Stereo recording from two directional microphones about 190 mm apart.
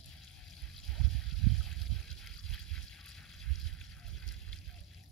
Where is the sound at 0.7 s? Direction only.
Centre (ahead or behind).